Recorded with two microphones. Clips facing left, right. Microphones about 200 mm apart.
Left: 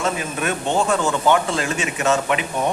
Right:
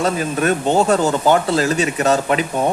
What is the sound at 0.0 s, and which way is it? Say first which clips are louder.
Speech: right 5 dB; 40° right (ahead or behind).